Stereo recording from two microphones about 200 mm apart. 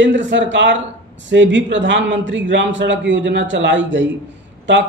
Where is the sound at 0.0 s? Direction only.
65° right (ahead or behind).